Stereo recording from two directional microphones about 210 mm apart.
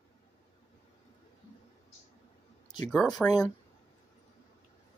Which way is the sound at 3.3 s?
15° left (ahead or behind).